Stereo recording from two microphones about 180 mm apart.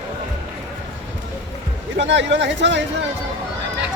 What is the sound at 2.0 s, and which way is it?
Speech, 80° right.